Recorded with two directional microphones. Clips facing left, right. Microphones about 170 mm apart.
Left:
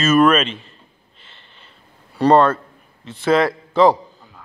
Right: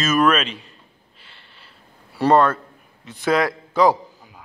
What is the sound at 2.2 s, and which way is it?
A man's voice, 5° right (ahead or behind).